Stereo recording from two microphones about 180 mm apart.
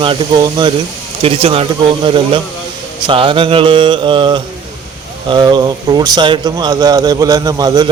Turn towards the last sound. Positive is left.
turn(degrees=-20)  # may be behind; listen again after turning